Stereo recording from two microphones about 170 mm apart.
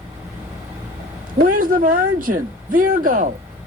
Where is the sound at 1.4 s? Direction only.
55° right (ahead or behind).